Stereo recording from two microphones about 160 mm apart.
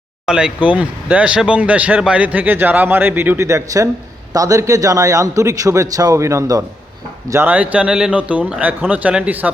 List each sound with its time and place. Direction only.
0.3 s a man's voice: 5° right (ahead or behind)